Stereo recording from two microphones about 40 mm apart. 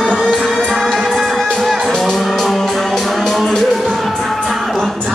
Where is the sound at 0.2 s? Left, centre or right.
Centre.